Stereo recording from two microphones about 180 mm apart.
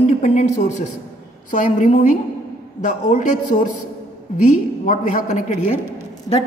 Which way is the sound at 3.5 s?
45° left (ahead or behind).